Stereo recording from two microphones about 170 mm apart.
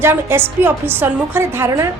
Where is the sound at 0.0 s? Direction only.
15° right (ahead or behind).